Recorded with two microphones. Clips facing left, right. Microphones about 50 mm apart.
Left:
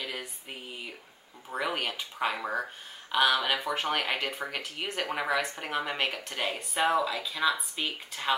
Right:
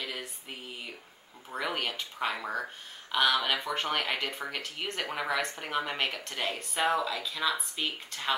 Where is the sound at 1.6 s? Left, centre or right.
Centre.